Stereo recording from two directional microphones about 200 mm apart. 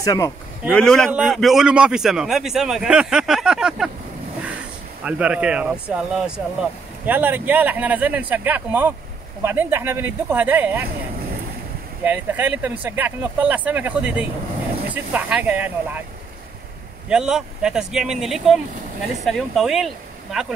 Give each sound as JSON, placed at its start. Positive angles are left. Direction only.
{"t": 0.0, "sound": "speech", "side_deg": 15}
{"t": 0.7, "sound": "a man's voice", "side_deg": 5}
{"t": 5.0, "sound": "speech", "side_deg": -5}
{"t": 12.0, "sound": "speech", "side_deg": -10}
{"t": 17.1, "sound": "a man's voice", "side_deg": -5}